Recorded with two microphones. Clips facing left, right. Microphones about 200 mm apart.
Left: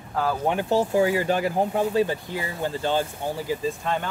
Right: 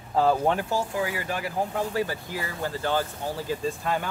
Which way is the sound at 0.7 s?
30° left (ahead or behind).